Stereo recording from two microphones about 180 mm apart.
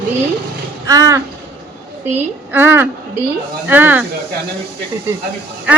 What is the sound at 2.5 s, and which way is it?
Speech, 10° right (ahead or behind).